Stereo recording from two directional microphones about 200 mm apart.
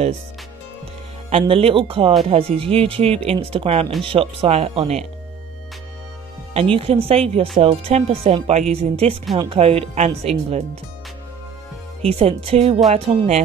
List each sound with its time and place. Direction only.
1.3 s speech: 30° right (ahead or behind)
6.5 s speech: 30° right (ahead or behind)
12.0 s speech: 30° right (ahead or behind)